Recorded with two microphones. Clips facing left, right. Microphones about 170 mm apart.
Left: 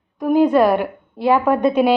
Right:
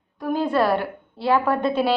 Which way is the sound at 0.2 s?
15° left (ahead or behind).